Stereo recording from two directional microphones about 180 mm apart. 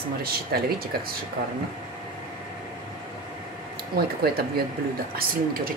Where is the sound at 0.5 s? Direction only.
60° right (ahead or behind).